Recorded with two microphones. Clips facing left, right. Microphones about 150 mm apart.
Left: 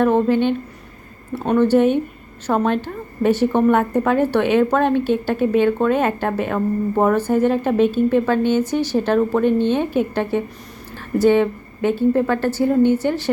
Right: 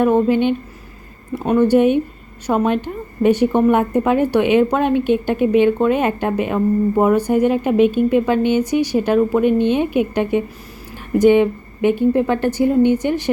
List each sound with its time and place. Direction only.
0.0 s a woman's voice: 10° right (ahead or behind)